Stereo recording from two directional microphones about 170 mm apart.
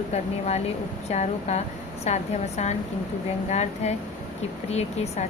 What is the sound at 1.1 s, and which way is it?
Speech, 40° left (ahead or behind).